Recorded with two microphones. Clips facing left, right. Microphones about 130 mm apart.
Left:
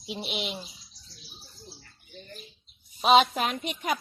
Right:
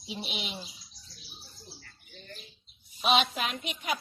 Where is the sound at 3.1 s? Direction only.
45° left (ahead or behind).